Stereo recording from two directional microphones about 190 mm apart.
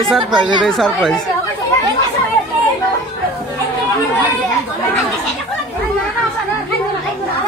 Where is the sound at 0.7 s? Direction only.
Centre (ahead or behind).